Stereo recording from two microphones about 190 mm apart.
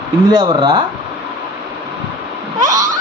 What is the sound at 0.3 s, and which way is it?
Speech, 25° right (ahead or behind).